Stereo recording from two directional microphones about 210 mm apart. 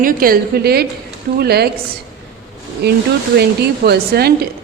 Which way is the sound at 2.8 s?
50° right (ahead or behind).